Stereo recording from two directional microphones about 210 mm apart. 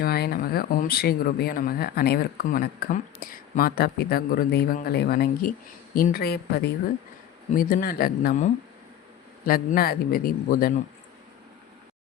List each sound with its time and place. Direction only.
0.0 s speech: 45° left (ahead or behind)
9.5 s speech: 45° left (ahead or behind)